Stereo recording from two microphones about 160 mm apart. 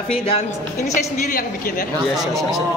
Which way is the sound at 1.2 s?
60° left (ahead or behind).